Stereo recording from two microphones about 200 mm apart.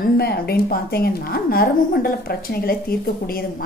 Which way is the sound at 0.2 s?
50° left (ahead or behind).